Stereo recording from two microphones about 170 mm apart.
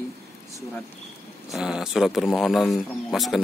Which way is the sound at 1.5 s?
5° right (ahead or behind).